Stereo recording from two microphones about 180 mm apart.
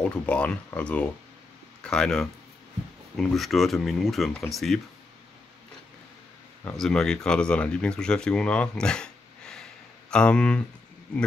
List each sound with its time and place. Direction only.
0.0 s speech: 5° left (ahead or behind)
6.6 s speech: 5° left (ahead or behind)